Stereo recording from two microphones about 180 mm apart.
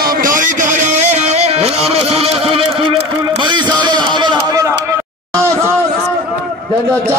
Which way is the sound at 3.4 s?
25° right (ahead or behind).